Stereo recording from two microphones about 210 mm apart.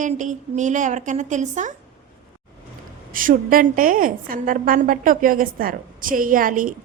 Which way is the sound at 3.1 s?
40° right (ahead or behind).